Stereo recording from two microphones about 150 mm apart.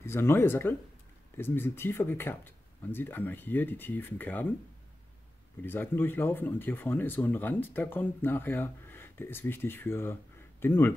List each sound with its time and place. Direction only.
0.0 s speech: 15° left (ahead or behind)
5.6 s speech: 15° left (ahead or behind)